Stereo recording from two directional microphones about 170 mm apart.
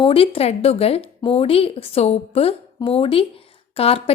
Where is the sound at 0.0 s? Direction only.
35° left (ahead or behind).